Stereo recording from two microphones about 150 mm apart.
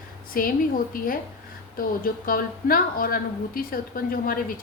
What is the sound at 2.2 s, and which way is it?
A woman's voice, 70° left (ahead or behind).